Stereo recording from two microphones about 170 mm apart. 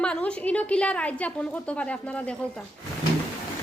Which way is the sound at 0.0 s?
5° left (ahead or behind).